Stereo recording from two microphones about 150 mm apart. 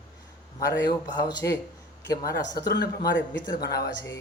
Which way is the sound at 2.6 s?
90° left.